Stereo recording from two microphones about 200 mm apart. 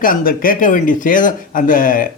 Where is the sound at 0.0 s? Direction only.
45° left (ahead or behind).